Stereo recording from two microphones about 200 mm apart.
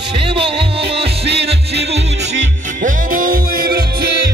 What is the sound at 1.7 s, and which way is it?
Music, 55° right (ahead or behind).